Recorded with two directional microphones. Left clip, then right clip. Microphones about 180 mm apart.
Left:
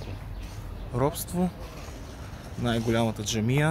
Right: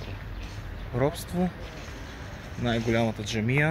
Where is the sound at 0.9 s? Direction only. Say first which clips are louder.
Even; 10° left (ahead or behind).